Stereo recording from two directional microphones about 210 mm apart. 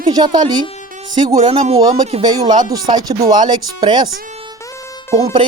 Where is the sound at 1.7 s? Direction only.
15° right (ahead or behind).